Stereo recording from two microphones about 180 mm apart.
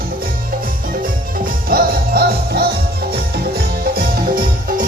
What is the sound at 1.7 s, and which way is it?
Music, 55° right (ahead or behind).